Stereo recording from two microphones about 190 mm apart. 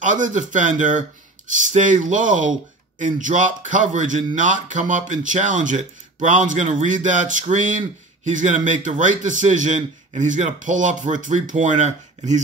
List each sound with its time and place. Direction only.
0.0 s speech: 40° right (ahead or behind)